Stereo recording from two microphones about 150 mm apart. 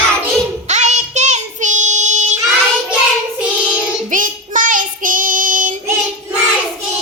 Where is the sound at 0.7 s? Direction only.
50° right (ahead or behind).